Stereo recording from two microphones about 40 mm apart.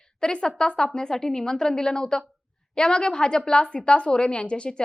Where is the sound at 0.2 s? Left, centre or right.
Left.